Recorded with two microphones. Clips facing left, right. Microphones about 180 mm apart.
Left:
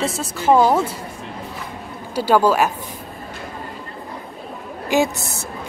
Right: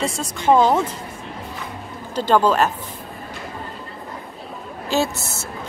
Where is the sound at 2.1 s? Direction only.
10° left (ahead or behind).